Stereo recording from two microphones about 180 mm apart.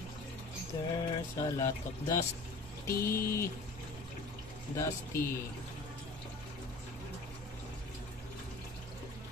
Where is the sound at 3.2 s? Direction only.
50° left (ahead or behind).